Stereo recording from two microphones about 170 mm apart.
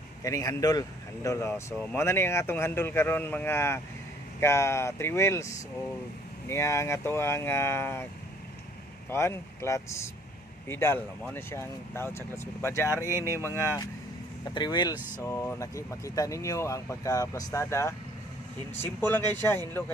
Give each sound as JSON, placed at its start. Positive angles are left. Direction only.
{"t": 0.2, "sound": "speech", "side_deg": 20}
{"t": 9.0, "sound": "speech", "side_deg": 15}
{"t": 13.1, "sound": "speech", "side_deg": -15}
{"t": 14.4, "sound": "speech", "side_deg": 25}